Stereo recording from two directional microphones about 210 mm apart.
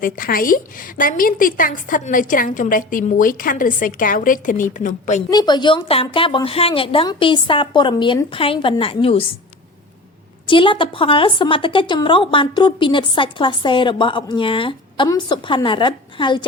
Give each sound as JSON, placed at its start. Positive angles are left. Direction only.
{"t": 0.0, "sound": "a woman's voice", "side_deg": 45}
{"t": 5.3, "sound": "a woman's voice", "side_deg": 20}
{"t": 10.4, "sound": "a woman's voice", "side_deg": 25}